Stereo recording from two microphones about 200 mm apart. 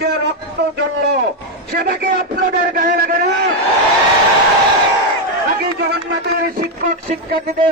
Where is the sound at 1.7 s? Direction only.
50° right (ahead or behind).